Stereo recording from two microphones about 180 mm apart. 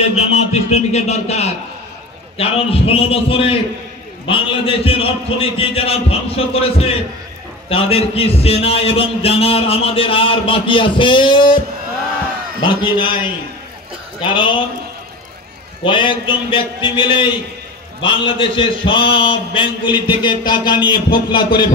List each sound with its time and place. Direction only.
0.1 s a man's voice: 35° left (ahead or behind)
12.6 s a man's voice: 25° left (ahead or behind)
15.8 s a man's voice: 25° left (ahead or behind)